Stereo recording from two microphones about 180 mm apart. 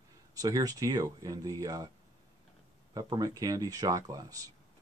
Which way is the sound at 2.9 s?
20° right (ahead or behind).